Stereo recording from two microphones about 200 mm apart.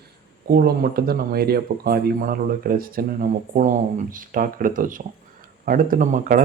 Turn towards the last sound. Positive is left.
turn(degrees=-40)  # may be behind; listen again after turning